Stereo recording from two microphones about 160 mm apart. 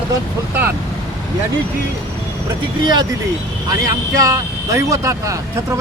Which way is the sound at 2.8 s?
25° right (ahead or behind).